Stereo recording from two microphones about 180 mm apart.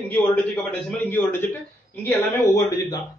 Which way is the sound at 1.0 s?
10° left (ahead or behind).